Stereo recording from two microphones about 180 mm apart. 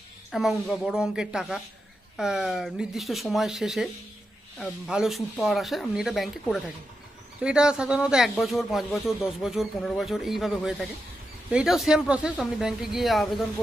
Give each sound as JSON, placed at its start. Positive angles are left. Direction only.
{"t": 0.3, "sound": "a man's voice", "side_deg": 0}